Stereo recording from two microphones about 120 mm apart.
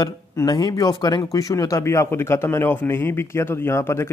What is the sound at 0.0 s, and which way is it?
Speech, 35° left (ahead or behind).